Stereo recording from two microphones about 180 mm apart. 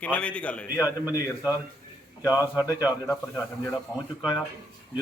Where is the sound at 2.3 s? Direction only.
15° left (ahead or behind).